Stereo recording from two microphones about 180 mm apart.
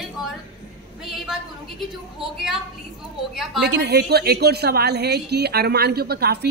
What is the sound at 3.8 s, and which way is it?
A woman's voice, 65° right (ahead or behind).